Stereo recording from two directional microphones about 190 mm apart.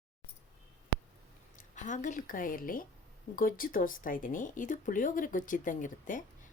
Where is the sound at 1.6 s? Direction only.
40° left (ahead or behind).